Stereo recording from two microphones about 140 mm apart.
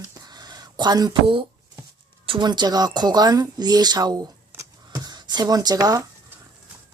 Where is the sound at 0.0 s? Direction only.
25° right (ahead or behind).